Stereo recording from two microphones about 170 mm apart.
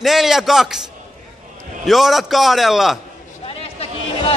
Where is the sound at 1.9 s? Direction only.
Centre (ahead or behind).